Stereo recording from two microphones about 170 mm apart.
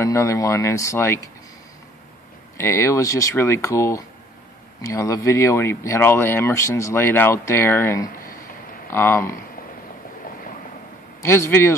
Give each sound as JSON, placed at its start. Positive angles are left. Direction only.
{"t": 0.0, "sound": "speech", "side_deg": 15}
{"t": 2.5, "sound": "speech", "side_deg": 15}
{"t": 8.1, "sound": "a sound", "side_deg": 55}
{"t": 8.9, "sound": "speech", "side_deg": 15}
{"t": 11.2, "sound": "speech", "side_deg": 15}